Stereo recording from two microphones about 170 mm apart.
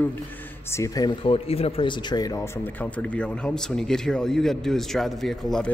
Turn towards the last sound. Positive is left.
turn(degrees=5)  # may be behind; listen again after turning